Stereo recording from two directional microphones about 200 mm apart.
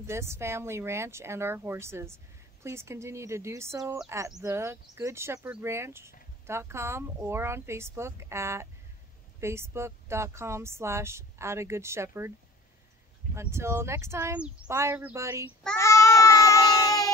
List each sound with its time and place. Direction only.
0.0 s speech: 15° right (ahead or behind)
13.3 s speech: 15° right (ahead or behind)
15.8 s baby cry: 15° left (ahead or behind)